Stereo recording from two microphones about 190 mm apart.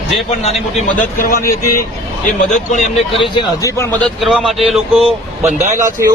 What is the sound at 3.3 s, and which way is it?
Speech, 25° left (ahead or behind).